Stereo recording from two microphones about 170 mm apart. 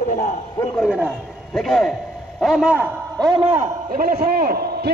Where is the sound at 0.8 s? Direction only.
5° right (ahead or behind).